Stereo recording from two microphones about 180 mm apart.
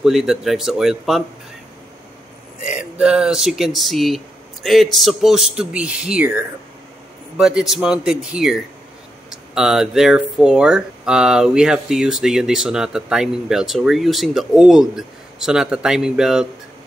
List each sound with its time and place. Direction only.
0.0 s speech: centre (ahead or behind)
2.6 s speech: 5° right (ahead or behind)